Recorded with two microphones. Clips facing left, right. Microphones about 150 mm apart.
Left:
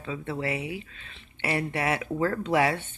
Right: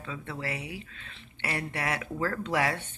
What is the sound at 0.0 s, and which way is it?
Speech, 10° left (ahead or behind).